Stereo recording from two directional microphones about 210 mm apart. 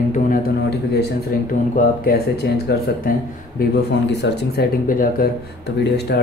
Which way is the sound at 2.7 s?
50° left (ahead or behind).